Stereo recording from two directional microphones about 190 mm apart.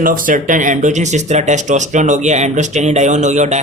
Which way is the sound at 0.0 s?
45° right (ahead or behind).